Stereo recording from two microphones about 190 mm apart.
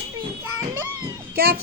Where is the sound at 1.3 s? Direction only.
50° right (ahead or behind).